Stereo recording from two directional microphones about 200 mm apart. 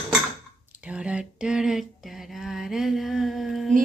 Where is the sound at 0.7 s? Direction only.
5° right (ahead or behind).